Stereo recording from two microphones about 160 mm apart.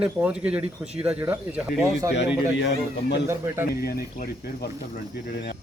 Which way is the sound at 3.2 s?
15° right (ahead or behind).